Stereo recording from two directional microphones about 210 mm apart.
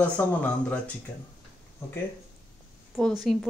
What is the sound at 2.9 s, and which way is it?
Speech, centre (ahead or behind).